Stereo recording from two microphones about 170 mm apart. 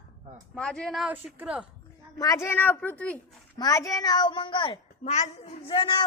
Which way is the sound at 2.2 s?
20° left (ahead or behind).